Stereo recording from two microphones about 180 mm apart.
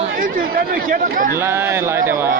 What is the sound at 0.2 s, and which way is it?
Speech, 50° right (ahead or behind).